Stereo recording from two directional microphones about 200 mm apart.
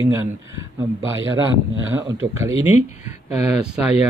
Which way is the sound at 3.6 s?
5° right (ahead or behind).